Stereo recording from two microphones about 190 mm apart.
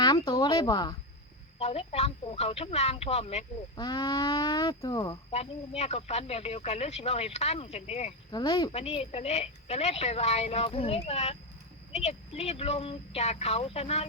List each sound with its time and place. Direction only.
0.0 s speech: 25° left (ahead or behind)
1.5 s speech: 35° left (ahead or behind)
3.8 s speech: 20° left (ahead or behind)
5.3 s speech: 35° left (ahead or behind)
8.3 s speech: 25° left (ahead or behind)